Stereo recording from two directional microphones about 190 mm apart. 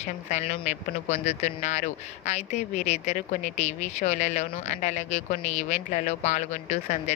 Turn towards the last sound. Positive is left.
turn(degrees=40)  # may be behind; listen again after turning